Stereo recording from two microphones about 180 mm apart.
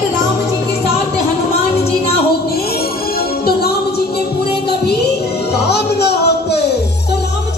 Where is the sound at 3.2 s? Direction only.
60° left (ahead or behind).